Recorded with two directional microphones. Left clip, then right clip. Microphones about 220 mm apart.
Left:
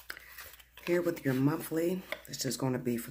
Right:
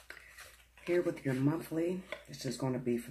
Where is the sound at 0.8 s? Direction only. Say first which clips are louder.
Left 2 dB; 35° left (ahead or behind).